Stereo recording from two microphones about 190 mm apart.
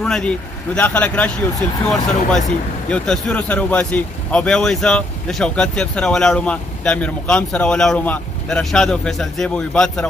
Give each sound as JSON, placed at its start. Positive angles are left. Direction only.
{"t": 0.0, "sound": "speech", "side_deg": 5}